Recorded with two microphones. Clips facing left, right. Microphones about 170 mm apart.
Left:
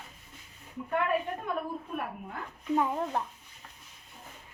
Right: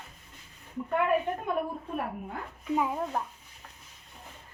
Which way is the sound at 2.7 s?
5° right (ahead or behind).